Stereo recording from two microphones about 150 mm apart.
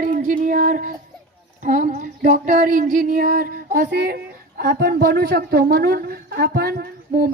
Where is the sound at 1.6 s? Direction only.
55° right (ahead or behind); by 6.7 s 90° right.